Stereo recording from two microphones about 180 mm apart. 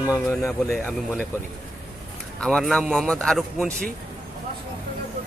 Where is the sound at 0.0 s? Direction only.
15° left (ahead or behind).